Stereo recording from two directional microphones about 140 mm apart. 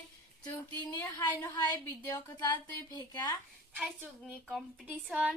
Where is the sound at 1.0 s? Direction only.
25° left (ahead or behind).